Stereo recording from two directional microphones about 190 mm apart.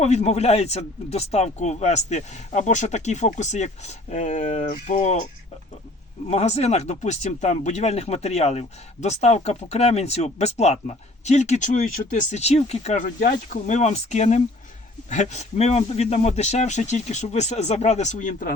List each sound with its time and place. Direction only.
0.0 s speech: 35° left (ahead or behind)
6.3 s speech: 35° left (ahead or behind)